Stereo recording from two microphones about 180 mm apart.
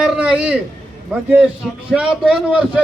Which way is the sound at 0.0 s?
5° right (ahead or behind).